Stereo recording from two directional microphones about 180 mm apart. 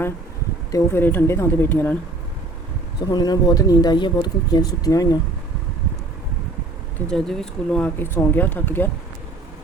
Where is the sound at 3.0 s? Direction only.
20° left (ahead or behind).